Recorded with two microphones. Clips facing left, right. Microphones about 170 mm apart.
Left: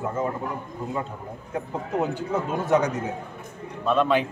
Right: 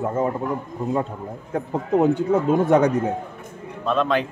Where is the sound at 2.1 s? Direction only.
55° right (ahead or behind).